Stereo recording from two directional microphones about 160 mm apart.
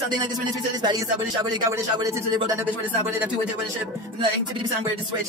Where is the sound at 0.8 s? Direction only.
25° right (ahead or behind).